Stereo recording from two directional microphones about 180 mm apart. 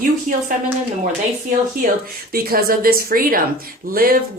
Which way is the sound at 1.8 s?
55° right (ahead or behind).